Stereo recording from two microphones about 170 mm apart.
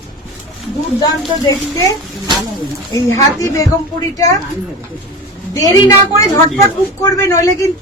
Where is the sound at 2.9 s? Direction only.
20° left (ahead or behind).